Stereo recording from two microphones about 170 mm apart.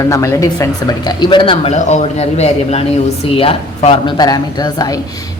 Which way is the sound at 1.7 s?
40° left (ahead or behind).